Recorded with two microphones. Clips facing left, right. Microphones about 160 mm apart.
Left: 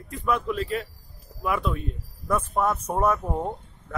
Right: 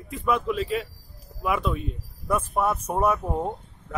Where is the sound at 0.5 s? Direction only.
20° right (ahead or behind).